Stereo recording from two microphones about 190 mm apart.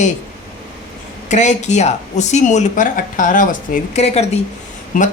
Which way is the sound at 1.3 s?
40° left (ahead or behind).